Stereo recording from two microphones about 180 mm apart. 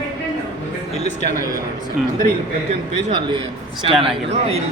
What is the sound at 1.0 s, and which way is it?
Speech, 40° left (ahead or behind).